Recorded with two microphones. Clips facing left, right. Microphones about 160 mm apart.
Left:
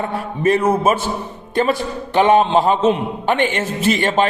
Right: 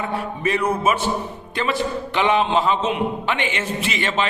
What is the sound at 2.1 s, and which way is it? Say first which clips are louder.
A man's voice: left 6 dB; 45° left (ahead or behind).